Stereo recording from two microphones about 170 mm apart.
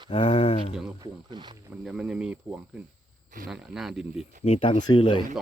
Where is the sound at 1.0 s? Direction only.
25° right (ahead or behind).